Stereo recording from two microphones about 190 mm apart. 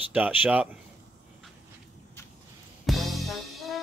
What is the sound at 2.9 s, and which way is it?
Music, centre (ahead or behind).